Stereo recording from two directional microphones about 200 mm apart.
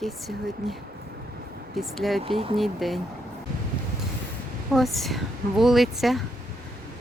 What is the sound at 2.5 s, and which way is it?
Speech, centre (ahead or behind).